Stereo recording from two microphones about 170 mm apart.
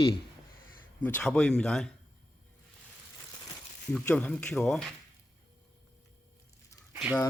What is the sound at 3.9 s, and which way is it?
Speech, 5° left (ahead or behind).